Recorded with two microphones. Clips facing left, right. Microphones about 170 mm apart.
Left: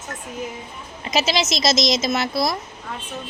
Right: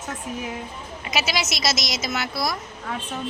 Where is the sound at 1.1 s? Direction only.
35° left (ahead or behind).